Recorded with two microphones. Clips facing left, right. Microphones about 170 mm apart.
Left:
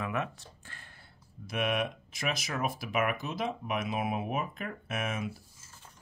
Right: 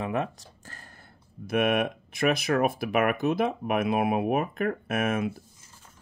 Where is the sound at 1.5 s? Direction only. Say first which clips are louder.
Right 7 dB; 55° right (ahead or behind).